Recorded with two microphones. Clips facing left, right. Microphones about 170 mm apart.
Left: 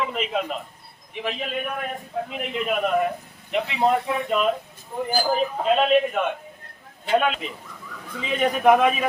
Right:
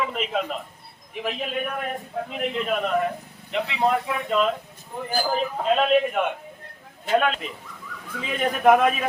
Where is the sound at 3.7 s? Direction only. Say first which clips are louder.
Left 2 dB; 15° left (ahead or behind).